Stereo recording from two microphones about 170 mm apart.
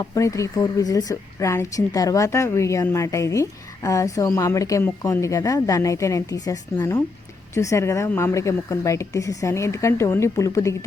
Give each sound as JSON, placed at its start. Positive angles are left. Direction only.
{"t": 0.0, "sound": "speech", "side_deg": 20}